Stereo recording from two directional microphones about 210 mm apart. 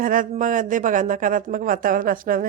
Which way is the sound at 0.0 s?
40° right (ahead or behind).